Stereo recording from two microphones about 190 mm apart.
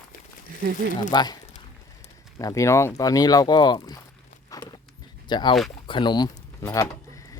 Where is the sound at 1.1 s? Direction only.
20° left (ahead or behind).